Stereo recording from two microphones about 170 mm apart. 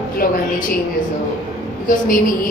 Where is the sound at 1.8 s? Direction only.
55° left (ahead or behind).